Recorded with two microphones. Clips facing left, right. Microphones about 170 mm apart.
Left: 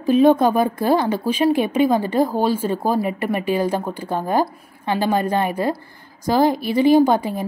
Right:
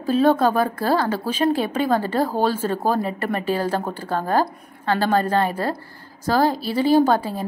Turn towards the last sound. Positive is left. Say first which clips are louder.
# left 2 dB
turn(degrees=15)  # may be behind; listen again after turning